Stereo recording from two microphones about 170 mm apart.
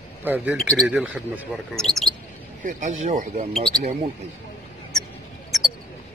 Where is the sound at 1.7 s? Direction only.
5° left (ahead or behind).